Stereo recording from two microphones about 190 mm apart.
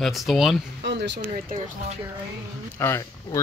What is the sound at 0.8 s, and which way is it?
Speech, 65° right (ahead or behind).